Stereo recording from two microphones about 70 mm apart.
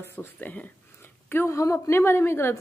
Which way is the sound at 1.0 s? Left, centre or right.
Left.